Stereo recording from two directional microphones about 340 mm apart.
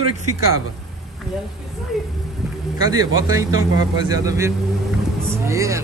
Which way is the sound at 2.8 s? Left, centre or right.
Centre.